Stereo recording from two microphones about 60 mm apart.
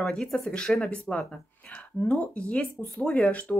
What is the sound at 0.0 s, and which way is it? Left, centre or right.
Speech, centre.